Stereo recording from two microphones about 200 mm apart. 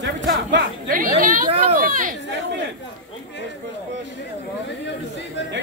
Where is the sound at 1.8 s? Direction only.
45° right (ahead or behind).